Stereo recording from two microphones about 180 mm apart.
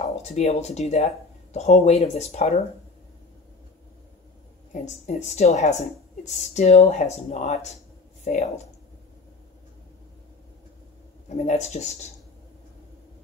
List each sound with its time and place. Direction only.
0.0 s speech: 40° left (ahead or behind)
4.8 s a woman's voice: 40° left (ahead or behind)
11.2 s a woman's voice: 40° left (ahead or behind)